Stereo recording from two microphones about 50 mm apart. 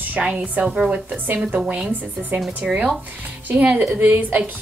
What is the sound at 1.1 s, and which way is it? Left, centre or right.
Speech, right.